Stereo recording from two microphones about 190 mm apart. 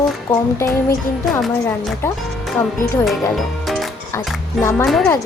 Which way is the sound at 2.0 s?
10° left (ahead or behind).